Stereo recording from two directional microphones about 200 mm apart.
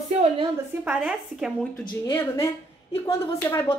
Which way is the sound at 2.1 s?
15° left (ahead or behind).